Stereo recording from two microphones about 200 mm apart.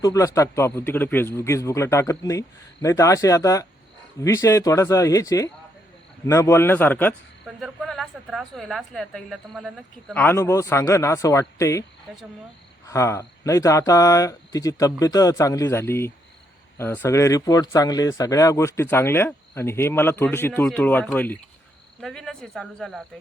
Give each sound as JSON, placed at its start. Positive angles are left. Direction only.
{"t": 0.0, "sound": "speech", "side_deg": 15}
{"t": 10.2, "sound": "speech", "side_deg": 10}
{"t": 12.1, "sound": "speech", "side_deg": 0}
{"t": 12.9, "sound": "speech", "side_deg": 15}